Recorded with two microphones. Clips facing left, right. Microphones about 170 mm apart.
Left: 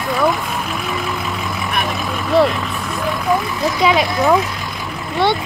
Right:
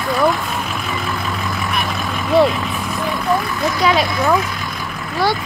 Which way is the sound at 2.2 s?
Centre (ahead or behind).